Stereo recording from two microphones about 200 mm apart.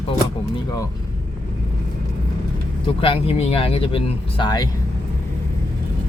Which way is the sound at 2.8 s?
25° left (ahead or behind).